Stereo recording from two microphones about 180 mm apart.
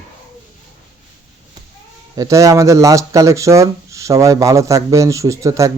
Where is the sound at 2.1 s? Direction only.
20° right (ahead or behind).